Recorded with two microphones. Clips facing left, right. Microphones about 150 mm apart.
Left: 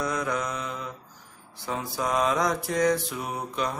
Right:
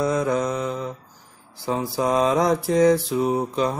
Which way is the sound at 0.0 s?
25° right (ahead or behind).